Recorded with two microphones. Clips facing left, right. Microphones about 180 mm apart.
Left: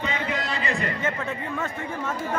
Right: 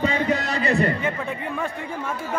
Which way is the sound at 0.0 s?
40° right (ahead or behind).